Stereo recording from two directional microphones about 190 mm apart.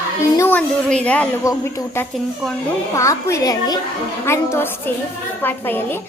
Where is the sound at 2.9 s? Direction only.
15° left (ahead or behind).